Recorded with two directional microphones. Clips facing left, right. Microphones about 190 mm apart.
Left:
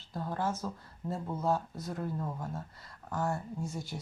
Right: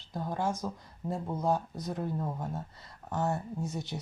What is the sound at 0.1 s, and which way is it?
Speech, 15° right (ahead or behind).